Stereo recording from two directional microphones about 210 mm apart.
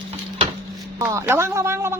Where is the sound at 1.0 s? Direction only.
10° right (ahead or behind).